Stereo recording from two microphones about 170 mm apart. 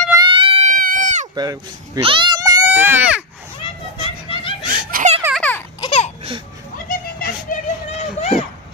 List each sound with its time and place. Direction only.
0.1 s a sound: 25° right (ahead or behind)
0.8 s sheep: 50° right (ahead or behind)
1.3 s speech: 25° right (ahead or behind)
2.0 s children playing: 30° right (ahead or behind); by 3.3 s 10° right (ahead or behind)
3.6 s children playing: 30° left (ahead or behind)
4.9 s baby laughter: 55° right (ahead or behind)
5.3 s a sound: 10° left (ahead or behind)
5.8 s a sound: 35° left (ahead or behind)
6.9 s children playing: 55° left (ahead or behind); by 8.5 s 40° left (ahead or behind)